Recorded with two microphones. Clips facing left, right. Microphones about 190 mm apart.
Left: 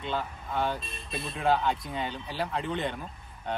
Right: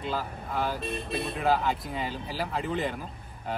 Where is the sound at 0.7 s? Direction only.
65° right (ahead or behind).